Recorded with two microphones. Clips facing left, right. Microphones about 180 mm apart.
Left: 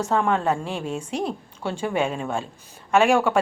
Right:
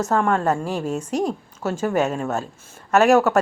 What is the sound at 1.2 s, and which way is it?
Speech, 5° right (ahead or behind).